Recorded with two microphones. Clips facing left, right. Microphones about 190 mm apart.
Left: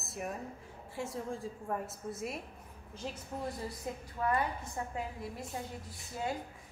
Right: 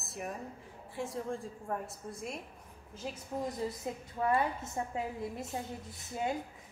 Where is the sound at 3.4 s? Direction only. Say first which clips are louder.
Right 2 dB; 25° right (ahead or behind).